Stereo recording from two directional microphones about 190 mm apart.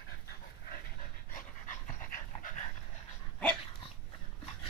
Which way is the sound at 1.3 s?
40° left (ahead or behind).